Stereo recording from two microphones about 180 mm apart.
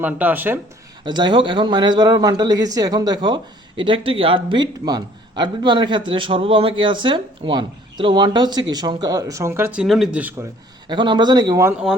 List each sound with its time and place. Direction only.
0.0 s speech: 10° right (ahead or behind)
1.0 s speech: 25° right (ahead or behind)
9.8 s speech: centre (ahead or behind)
10.8 s speech: 25° right (ahead or behind)